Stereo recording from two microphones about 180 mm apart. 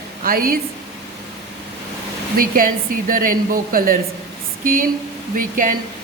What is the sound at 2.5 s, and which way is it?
A woman's voice, 50° right (ahead or behind).